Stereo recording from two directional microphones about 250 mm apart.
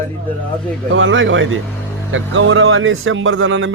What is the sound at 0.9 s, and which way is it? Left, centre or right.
Chicken, right.